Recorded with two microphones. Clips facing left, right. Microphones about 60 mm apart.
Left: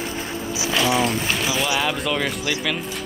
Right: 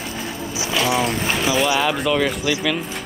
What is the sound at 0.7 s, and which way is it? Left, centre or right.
Speech, right.